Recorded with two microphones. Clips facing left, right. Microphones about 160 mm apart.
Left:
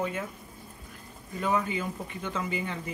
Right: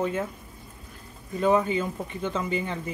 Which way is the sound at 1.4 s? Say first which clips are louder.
Right 6 dB; 30° right (ahead or behind).